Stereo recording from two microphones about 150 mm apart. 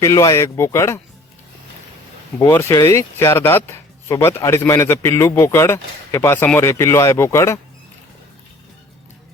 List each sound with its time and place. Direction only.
0.0 s speech: 20° left (ahead or behind)
2.4 s speech: 15° left (ahead or behind)